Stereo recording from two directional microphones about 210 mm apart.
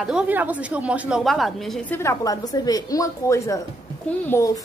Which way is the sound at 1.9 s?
15° left (ahead or behind).